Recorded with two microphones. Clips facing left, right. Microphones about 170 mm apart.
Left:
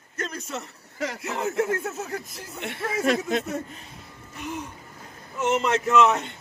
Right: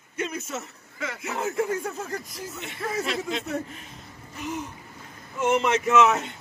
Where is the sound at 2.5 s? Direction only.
65° left (ahead or behind).